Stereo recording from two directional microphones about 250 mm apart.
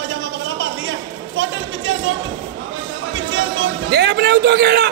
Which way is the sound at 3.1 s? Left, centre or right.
Right.